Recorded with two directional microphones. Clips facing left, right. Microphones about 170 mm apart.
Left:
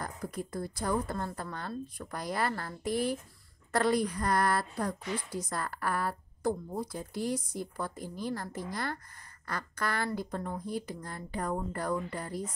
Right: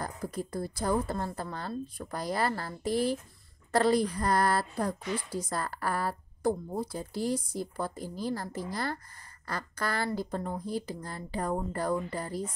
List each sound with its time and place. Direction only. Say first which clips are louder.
0.0 s a woman's voice: right 2 dB; 30° right (ahead or behind)